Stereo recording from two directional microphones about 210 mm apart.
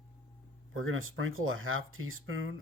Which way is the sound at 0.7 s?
70° right (ahead or behind).